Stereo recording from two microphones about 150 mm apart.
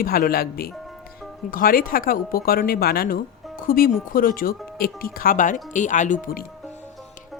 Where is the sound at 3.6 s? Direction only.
75° left (ahead or behind).